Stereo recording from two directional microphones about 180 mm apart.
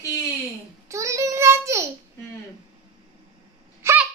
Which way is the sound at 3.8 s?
15° right (ahead or behind).